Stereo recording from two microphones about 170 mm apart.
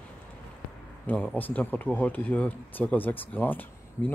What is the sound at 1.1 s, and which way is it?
Speech, 10° left (ahead or behind).